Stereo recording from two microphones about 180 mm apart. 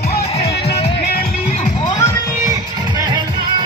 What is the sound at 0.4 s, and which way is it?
Music, 35° left (ahead or behind).